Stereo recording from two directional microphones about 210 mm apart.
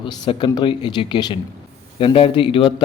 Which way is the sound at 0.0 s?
25° left (ahead or behind).